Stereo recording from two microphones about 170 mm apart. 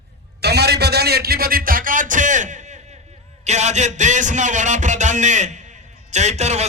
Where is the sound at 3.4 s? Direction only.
40° right (ahead or behind).